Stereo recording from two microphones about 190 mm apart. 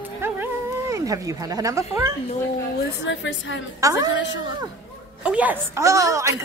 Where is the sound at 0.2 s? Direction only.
15° right (ahead or behind).